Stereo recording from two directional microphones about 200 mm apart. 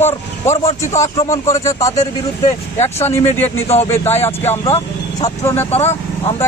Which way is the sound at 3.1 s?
10° left (ahead or behind).